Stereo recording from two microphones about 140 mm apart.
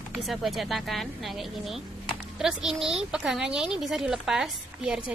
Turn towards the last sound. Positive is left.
turn(degrees=-5)  # may be behind; listen again after turning